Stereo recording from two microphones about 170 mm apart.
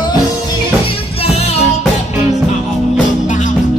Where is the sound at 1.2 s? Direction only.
40° left (ahead or behind).